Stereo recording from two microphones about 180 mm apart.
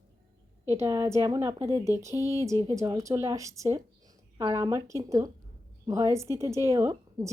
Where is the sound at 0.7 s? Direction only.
15° right (ahead or behind).